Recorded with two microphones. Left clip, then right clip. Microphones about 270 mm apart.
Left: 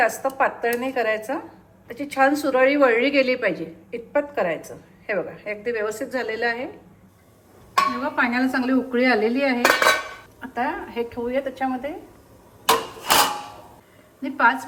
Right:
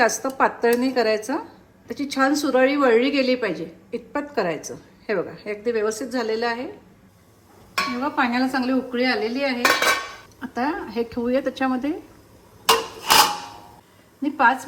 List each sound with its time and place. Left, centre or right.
0.0 s a woman's voice: centre
8.0 s speech: centre
10.5 s a woman's voice: centre
12.6 s rub: centre
14.2 s a woman's voice: centre